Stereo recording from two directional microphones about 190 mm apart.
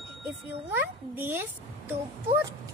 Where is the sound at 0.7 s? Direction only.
10° right (ahead or behind).